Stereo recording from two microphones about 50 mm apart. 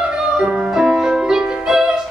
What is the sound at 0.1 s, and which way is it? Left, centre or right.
Music, centre.